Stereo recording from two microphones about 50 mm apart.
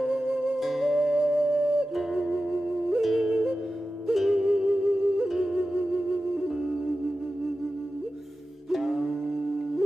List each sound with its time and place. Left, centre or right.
0.1 s music: centre
8.6 s music: centre